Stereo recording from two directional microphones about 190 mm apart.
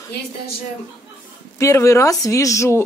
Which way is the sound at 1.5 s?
15° left (ahead or behind).